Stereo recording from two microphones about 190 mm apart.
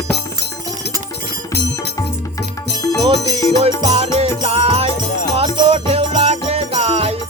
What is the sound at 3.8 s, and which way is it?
Music, 35° right (ahead or behind).